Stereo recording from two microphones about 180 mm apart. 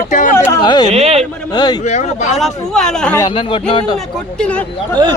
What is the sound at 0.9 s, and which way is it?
Speech, 35° right (ahead or behind).